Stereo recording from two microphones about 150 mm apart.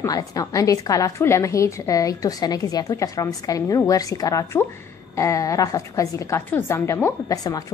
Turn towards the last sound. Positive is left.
turn(degrees=25)  # may be behind; listen again after turning